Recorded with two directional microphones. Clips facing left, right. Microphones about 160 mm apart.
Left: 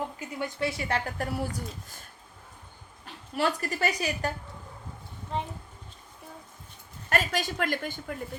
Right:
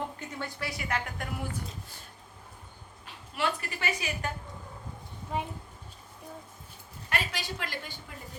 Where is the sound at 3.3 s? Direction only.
40° left (ahead or behind).